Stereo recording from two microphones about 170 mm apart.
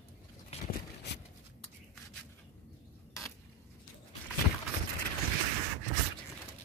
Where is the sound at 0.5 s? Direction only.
40° left (ahead or behind).